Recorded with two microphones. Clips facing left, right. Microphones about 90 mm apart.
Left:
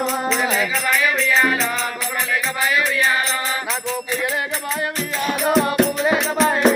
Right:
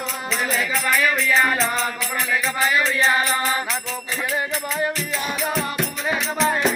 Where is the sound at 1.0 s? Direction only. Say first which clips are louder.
Left 2 dB; centre (ahead or behind).